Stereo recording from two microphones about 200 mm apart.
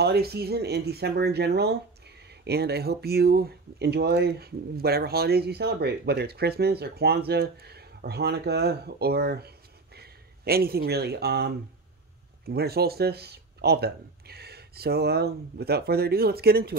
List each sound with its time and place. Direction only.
0.0 s speech: 55° right (ahead or behind)